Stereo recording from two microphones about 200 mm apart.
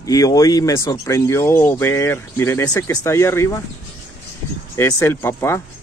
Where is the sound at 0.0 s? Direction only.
15° left (ahead or behind).